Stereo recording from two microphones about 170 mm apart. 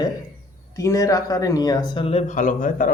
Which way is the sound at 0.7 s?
20° left (ahead or behind).